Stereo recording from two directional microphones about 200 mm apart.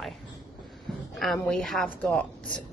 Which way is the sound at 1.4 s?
Centre (ahead or behind).